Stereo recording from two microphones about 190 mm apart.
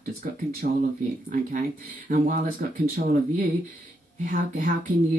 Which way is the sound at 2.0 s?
45° right (ahead or behind).